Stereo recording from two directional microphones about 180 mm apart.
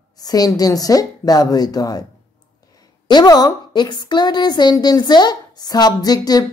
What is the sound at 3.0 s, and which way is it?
A woman's voice, 20° left (ahead or behind).